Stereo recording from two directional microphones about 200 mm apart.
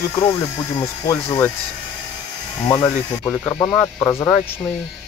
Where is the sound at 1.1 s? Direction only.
15° left (ahead or behind).